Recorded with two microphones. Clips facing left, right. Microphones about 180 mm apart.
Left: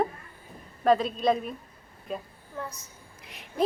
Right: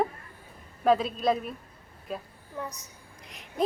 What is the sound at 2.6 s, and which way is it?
Speech, 15° right (ahead or behind).